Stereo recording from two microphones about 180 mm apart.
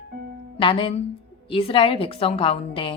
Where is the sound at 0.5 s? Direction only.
30° left (ahead or behind).